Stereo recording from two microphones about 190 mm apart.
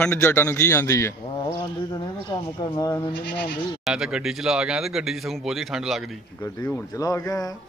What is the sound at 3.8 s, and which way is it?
Speech, 5° right (ahead or behind).